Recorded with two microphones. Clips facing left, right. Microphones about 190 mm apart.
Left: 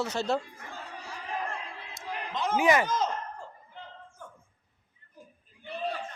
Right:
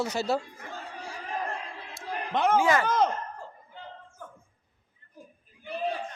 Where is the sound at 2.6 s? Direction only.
20° left (ahead or behind).